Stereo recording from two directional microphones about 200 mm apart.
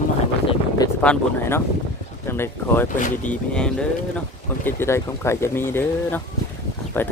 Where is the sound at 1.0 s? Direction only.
10° left (ahead or behind).